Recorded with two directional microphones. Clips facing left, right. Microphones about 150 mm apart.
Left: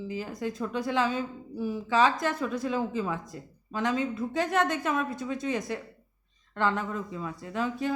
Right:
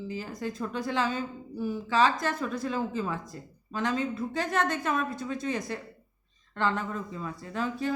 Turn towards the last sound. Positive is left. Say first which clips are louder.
# left 1 dB
turn(degrees=10)  # may be behind; listen again after turning